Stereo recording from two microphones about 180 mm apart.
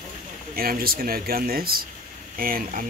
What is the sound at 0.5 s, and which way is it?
Speech, 55° right (ahead or behind).